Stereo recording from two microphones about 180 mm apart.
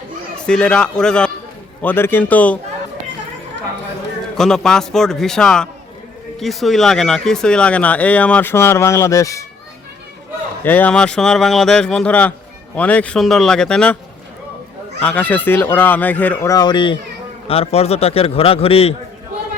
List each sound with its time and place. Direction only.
0.4 s speech: 5° left (ahead or behind)
4.4 s speech: 5° left (ahead or behind)
10.6 s speech: 10° left (ahead or behind)
15.0 s a man's voice: 10° left (ahead or behind); by 18.9 s 35° left (ahead or behind)